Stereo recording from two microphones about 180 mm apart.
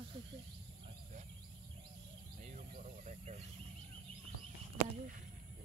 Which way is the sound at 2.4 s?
45° right (ahead or behind).